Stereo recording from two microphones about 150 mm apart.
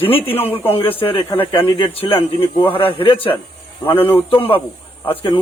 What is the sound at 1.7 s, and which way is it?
A man's voice, 30° left (ahead or behind).